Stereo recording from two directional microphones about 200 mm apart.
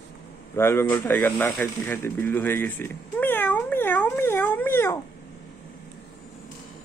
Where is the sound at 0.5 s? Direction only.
10° left (ahead or behind).